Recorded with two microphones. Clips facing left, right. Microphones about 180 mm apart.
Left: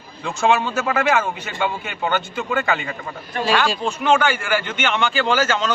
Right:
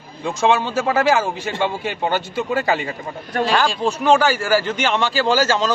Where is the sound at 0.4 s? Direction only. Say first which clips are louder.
Right 1 dB; 30° right (ahead or behind).